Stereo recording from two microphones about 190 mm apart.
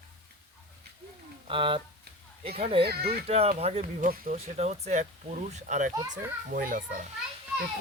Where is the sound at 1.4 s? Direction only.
25° right (ahead or behind).